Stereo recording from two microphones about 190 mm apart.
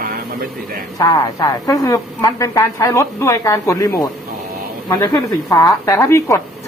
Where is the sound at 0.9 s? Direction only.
20° left (ahead or behind).